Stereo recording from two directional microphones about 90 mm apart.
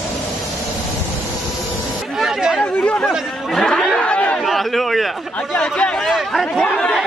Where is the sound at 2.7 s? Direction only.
15° left (ahead or behind).